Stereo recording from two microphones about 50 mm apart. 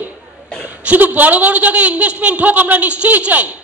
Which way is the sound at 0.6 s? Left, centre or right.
Right.